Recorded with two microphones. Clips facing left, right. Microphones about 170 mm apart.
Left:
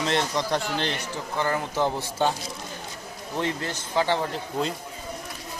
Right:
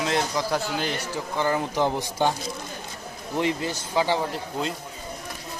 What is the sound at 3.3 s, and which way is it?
Speech, 15° right (ahead or behind).